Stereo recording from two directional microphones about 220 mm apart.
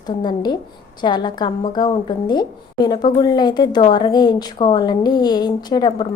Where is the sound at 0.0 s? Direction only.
20° left (ahead or behind).